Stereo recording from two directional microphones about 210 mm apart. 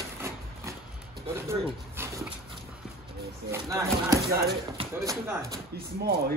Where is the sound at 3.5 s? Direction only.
15° right (ahead or behind).